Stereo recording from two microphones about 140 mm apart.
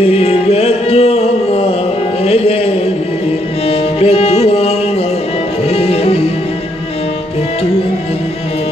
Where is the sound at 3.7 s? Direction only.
45° left (ahead or behind).